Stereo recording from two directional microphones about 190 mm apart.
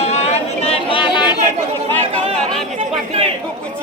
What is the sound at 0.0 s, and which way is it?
Chatter, 35° left (ahead or behind).